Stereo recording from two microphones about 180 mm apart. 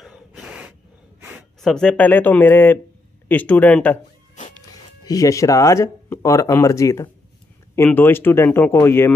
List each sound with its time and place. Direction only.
0.0 s gasp: 5° right (ahead or behind)
1.6 s speech: 5° left (ahead or behind)
4.6 s speech: 20° left (ahead or behind)